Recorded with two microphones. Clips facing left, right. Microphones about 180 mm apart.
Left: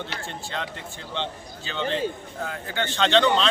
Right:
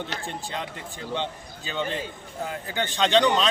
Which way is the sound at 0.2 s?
15° right (ahead or behind).